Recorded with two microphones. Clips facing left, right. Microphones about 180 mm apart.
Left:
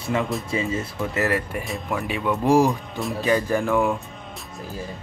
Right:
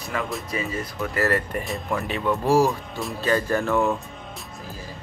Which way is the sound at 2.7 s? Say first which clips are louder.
Left 2 dB; centre (ahead or behind).